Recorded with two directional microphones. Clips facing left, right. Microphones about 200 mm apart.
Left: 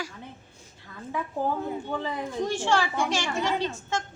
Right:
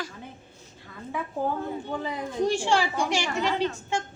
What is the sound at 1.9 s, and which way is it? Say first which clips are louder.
A woman's voice: even; 10° right (ahead or behind).